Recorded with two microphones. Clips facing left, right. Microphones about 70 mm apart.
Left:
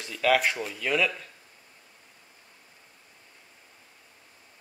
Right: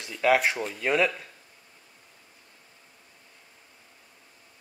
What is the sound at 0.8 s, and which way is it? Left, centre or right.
Speech, right.